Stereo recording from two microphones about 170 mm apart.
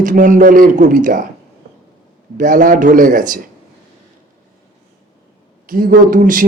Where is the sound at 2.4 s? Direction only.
50° right (ahead or behind).